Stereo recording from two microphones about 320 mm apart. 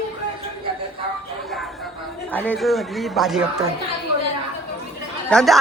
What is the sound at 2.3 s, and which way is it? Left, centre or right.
A man's voice, centre.